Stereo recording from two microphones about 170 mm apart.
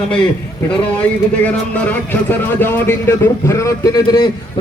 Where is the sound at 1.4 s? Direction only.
10° left (ahead or behind).